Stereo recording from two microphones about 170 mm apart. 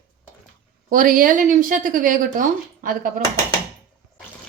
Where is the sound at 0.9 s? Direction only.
55° right (ahead or behind).